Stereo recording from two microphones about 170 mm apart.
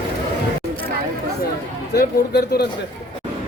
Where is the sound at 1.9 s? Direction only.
70° left (ahead or behind).